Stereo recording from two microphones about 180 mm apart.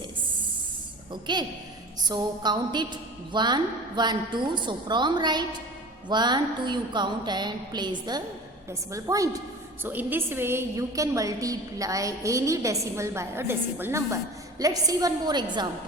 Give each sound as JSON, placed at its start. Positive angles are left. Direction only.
{"t": 1.1, "sound": "a woman's voice", "side_deg": -25}